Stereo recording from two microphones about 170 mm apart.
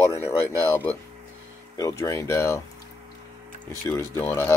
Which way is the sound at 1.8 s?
20° left (ahead or behind).